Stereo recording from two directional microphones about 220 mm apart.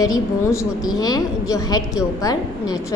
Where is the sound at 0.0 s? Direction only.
15° left (ahead or behind).